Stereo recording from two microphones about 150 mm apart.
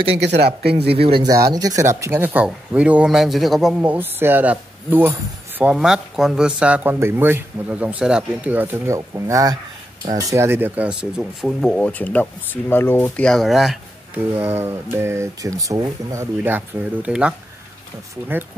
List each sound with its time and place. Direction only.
0.4 s speech: 90° right
0.9 s speech: 40° right (ahead or behind)
1.2 s speech: 25° right (ahead or behind); by 13.7 s centre (ahead or behind)
14.1 s speech: 15° right (ahead or behind)